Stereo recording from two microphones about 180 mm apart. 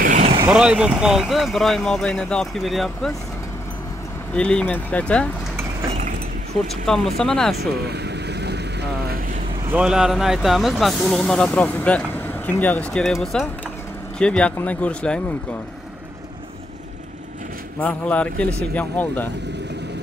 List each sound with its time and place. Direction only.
0.0 s vehicle: 45° right (ahead or behind)
0.5 s speech: 5° right (ahead or behind)
4.3 s speech: 5° left (ahead or behind)
6.9 s speech: 5° left (ahead or behind)
7.5 s vehicle: 65° right (ahead or behind)
9.7 s speech: 5° right (ahead or behind)
17.7 s speech: 5° left (ahead or behind)